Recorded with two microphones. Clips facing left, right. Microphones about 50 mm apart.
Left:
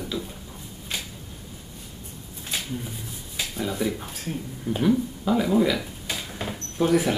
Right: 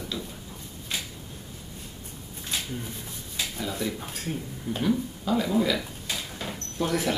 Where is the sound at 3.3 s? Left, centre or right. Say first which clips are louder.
Left 3 dB; centre.